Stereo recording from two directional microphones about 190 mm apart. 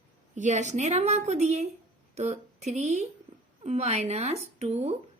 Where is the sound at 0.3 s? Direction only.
40° right (ahead or behind).